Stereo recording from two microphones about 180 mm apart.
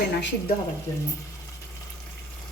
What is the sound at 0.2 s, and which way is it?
Speech, 75° left (ahead or behind).